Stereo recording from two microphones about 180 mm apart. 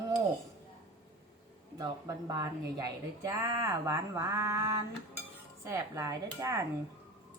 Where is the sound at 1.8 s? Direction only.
20° right (ahead or behind).